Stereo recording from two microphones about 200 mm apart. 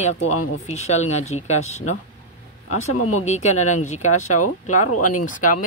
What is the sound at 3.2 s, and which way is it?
Speech, 35° left (ahead or behind).